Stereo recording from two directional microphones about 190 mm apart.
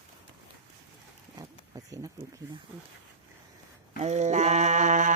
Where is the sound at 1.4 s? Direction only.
20° right (ahead or behind).